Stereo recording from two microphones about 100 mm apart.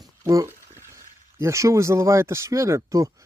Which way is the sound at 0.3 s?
30° right (ahead or behind).